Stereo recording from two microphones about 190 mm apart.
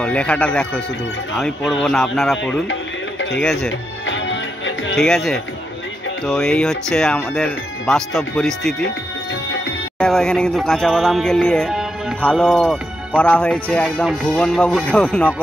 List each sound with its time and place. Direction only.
0.0 s speech: 5° left (ahead or behind)
4.0 s music: 80° left
4.9 s speech: centre (ahead or behind)
9.9 s speech: 5° left (ahead or behind)